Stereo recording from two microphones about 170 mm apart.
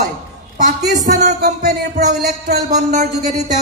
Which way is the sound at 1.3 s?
70° right (ahead or behind).